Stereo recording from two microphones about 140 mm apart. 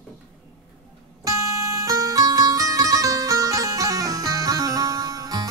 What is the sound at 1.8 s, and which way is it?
Music, 25° right (ahead or behind).